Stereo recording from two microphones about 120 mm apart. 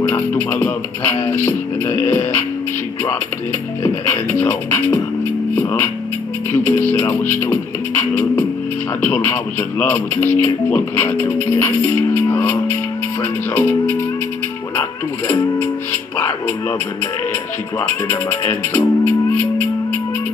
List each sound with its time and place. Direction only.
0.0 s speech: 15° left (ahead or behind)
3.8 s speech: 20° left (ahead or behind)
5.5 s music: 20° left (ahead or behind)
6.5 s speech: 20° left (ahead or behind)
15.6 s speech: 20° left (ahead or behind)
17.7 s speech: 20° left (ahead or behind)